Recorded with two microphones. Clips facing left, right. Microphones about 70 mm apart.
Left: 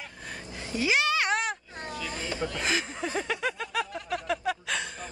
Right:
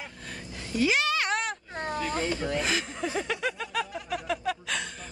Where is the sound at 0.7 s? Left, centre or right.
Centre.